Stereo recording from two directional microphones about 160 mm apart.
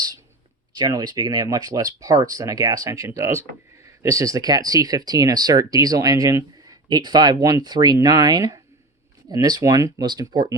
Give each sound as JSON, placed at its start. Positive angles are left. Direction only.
{"t": 0.7, "sound": "speech", "side_deg": -25}